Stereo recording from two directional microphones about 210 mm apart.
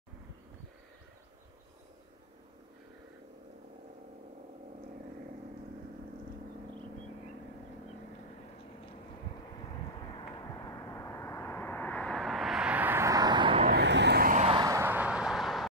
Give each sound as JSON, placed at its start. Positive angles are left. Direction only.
{"t": 10.6, "sound": "vehicle", "side_deg": 15}
{"t": 13.6, "sound": "vehicle", "side_deg": -45}
{"t": 14.5, "sound": "vehicle", "side_deg": -15}